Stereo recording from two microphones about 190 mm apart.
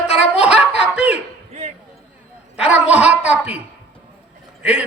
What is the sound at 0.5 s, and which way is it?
Snicker, 5° right (ahead or behind).